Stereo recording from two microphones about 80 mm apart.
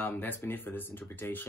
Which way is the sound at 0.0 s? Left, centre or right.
Left.